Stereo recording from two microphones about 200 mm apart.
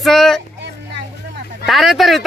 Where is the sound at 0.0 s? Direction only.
Centre (ahead or behind).